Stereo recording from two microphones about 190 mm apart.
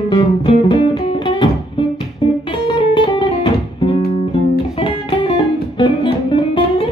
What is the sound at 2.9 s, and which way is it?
Music, 25° left (ahead or behind).